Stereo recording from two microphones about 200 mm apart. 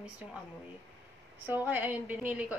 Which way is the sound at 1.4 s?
10° right (ahead or behind).